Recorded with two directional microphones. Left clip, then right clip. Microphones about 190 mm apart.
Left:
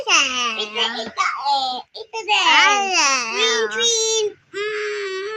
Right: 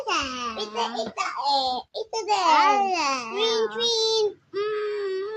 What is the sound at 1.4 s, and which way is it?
A child's voice, 50° right (ahead or behind).